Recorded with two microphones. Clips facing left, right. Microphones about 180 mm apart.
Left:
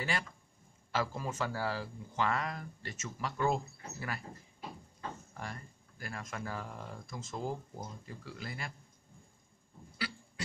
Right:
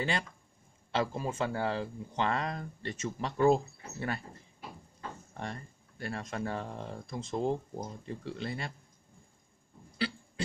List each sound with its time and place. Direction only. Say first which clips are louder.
0.9 s speech: right 3 dB; 25° right (ahead or behind)
5.4 s speech: right 6 dB; 30° right (ahead or behind)
9.9 s a sound: right 7 dB; 25° right (ahead or behind)